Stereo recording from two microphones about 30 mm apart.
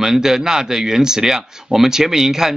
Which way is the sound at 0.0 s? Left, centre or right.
Centre.